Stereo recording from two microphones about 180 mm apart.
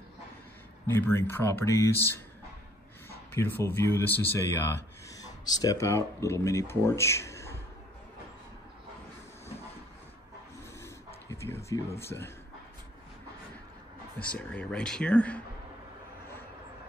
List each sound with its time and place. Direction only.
0.9 s speech: 10° left (ahead or behind)
3.3 s speech: 10° left (ahead or behind)
11.2 s a sound: 15° left (ahead or behind)
12.0 s speech: 15° left (ahead or behind)
14.2 s speech: 5° left (ahead or behind)